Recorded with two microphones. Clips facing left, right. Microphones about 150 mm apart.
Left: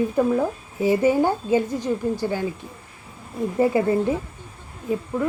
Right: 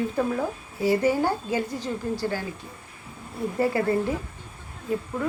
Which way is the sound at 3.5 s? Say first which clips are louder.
Left 4 dB; 20° left (ahead or behind).